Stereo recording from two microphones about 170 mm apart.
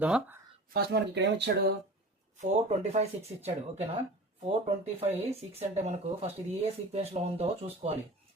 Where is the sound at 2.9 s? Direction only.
40° right (ahead or behind).